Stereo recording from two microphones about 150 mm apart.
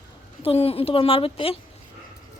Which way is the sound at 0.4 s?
40° left (ahead or behind).